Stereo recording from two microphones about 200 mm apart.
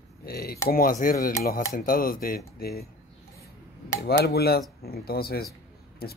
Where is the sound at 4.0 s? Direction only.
50° left (ahead or behind).